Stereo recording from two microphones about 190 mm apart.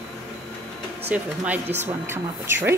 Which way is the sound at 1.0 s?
10° right (ahead or behind).